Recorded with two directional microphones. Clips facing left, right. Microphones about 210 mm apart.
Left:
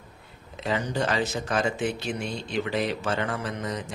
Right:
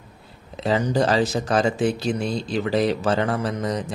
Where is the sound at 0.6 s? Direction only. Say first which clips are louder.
Right 7 dB; 35° right (ahead or behind).